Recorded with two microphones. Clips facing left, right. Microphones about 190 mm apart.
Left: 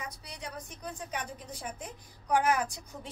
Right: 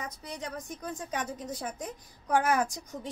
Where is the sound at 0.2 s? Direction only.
45° right (ahead or behind).